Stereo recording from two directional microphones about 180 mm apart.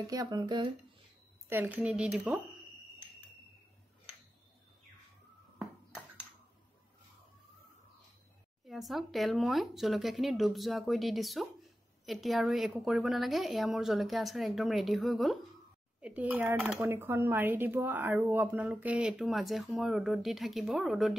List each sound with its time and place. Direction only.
0.1 s speech: 20° right (ahead or behind)
1.5 s a woman's voice: 10° right (ahead or behind)
5.6 s a sound: centre (ahead or behind)
8.6 s a woman's voice: centre (ahead or behind)